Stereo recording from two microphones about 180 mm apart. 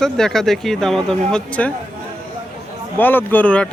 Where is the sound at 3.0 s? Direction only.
10° left (ahead or behind).